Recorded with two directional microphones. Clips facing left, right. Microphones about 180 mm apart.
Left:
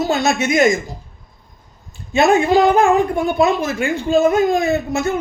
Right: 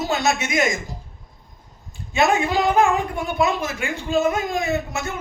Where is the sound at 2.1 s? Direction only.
30° left (ahead or behind).